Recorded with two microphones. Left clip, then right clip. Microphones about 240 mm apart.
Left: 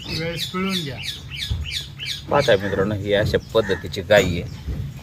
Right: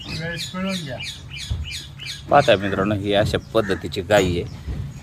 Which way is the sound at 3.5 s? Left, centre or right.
Right.